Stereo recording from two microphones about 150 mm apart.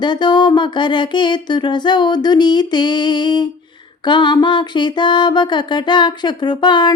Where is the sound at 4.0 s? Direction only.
30° left (ahead or behind).